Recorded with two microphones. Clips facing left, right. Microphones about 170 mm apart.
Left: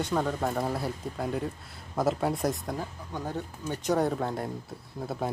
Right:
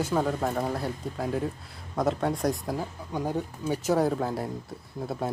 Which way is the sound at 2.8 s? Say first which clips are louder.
Right 4 dB; 10° right (ahead or behind).